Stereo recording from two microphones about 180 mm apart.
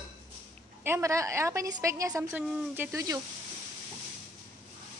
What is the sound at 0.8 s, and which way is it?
A woman's voice, 15° right (ahead or behind).